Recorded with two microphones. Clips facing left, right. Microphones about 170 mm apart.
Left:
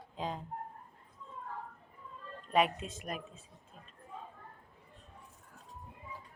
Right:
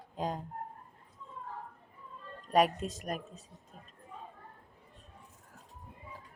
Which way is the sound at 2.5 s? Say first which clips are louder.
Right 3 dB; 40° right (ahead or behind).